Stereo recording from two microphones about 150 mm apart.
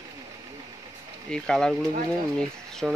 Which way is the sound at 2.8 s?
Centre (ahead or behind).